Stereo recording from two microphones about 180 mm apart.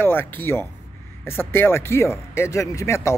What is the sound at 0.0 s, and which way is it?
Speech, 10° left (ahead or behind).